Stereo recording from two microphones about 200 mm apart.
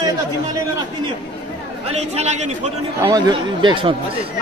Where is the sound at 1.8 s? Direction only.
35° right (ahead or behind).